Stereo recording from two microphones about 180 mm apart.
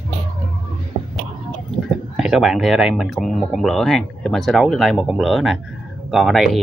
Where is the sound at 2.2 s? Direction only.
5° right (ahead or behind).